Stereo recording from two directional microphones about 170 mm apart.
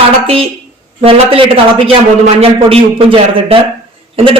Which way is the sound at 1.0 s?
35° right (ahead or behind).